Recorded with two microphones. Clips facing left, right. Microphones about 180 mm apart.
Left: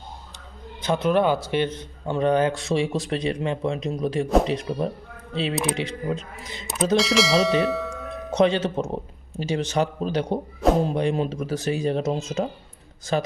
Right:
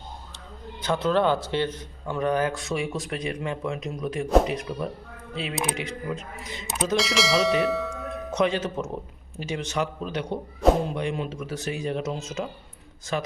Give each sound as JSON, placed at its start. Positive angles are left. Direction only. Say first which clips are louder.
{"t": 0.8, "sound": "a man's voice", "louder": "left 2 dB", "side_deg": 20}
{"t": 6.9, "sound": "speech", "louder": "left 4 dB", "side_deg": 0}
{"t": 8.3, "sound": "a man's voice", "louder": "left 5 dB", "side_deg": 30}